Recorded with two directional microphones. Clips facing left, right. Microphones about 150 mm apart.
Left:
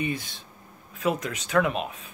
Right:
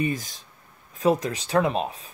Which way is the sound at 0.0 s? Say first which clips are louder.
Right 3 dB; 40° right (ahead or behind).